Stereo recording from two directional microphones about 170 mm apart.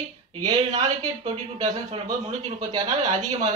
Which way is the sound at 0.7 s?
40° right (ahead or behind).